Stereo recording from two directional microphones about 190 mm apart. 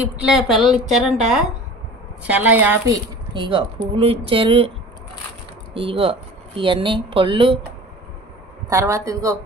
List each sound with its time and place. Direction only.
0.0 s a woman's voice: 5° right (ahead or behind)
3.3 s speech: 25° right (ahead or behind)
5.8 s speech: 30° right (ahead or behind)
8.6 s a man's voice: 15° right (ahead or behind)